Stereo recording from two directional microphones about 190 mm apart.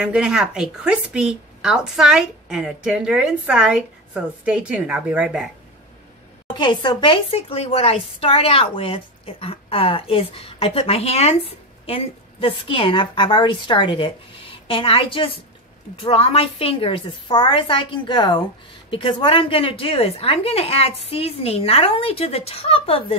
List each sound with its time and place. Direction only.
0.0 s a woman's voice: 5° right (ahead or behind)
6.5 s a woman's voice: 25° left (ahead or behind)